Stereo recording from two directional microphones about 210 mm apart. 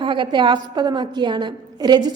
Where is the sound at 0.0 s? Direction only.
25° right (ahead or behind).